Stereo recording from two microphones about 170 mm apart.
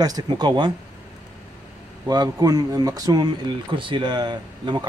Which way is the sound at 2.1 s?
20° right (ahead or behind).